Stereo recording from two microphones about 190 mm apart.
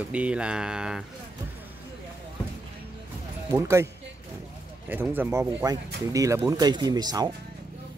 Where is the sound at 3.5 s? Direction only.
15° right (ahead or behind).